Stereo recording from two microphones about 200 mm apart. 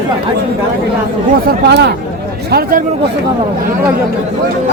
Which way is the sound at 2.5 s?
45° right (ahead or behind).